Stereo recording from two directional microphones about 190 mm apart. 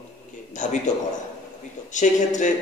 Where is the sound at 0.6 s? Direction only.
40° left (ahead or behind).